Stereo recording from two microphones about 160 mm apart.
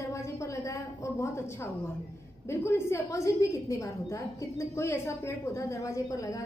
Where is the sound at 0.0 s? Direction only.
20° left (ahead or behind).